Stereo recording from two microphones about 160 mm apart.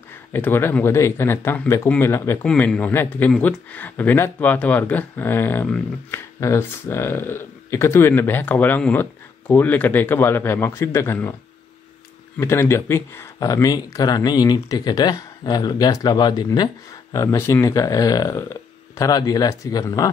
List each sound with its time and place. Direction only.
0.3 s speech: 15° left (ahead or behind)
2.4 s speech: 5° left (ahead or behind)
12.4 s speech: 15° left (ahead or behind)